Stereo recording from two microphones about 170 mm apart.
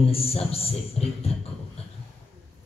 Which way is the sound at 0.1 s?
35° left (ahead or behind).